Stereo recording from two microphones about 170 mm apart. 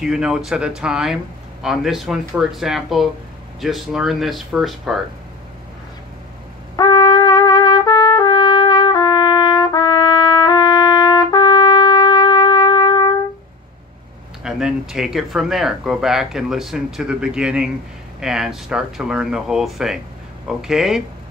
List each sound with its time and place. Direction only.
0.0 s speech: 5° right (ahead or behind)
6.8 s trumpet: 25° left (ahead or behind)
14.4 s speech: 5° right (ahead or behind)